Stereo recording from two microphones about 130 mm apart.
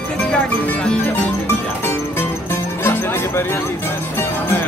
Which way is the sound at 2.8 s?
20° left (ahead or behind).